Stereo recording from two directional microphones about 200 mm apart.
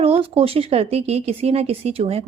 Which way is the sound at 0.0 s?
30° right (ahead or behind).